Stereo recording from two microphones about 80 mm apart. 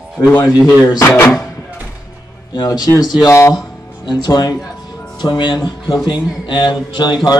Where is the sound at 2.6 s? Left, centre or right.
Left.